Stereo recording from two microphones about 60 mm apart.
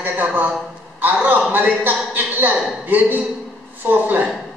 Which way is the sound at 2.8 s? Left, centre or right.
Right.